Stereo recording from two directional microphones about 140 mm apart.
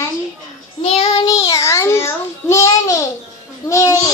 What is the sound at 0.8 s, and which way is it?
Child singing, 45° left (ahead or behind).